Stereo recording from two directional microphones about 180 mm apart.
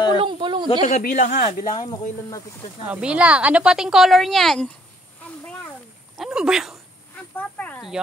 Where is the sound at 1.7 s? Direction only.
20° left (ahead or behind).